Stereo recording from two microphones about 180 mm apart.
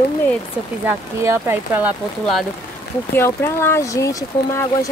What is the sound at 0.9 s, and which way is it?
Speech, 15° right (ahead or behind).